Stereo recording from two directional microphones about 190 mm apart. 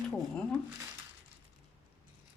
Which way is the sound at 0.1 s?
10° left (ahead or behind).